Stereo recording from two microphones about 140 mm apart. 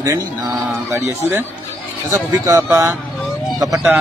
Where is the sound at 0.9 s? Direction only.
20° right (ahead or behind).